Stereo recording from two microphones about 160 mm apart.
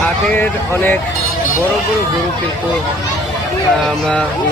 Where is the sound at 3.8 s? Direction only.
5° left (ahead or behind).